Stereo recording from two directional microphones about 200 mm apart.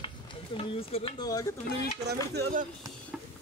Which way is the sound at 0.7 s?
30° left (ahead or behind).